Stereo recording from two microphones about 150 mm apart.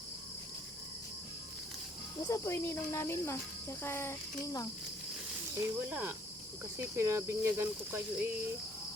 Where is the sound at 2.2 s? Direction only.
20° left (ahead or behind).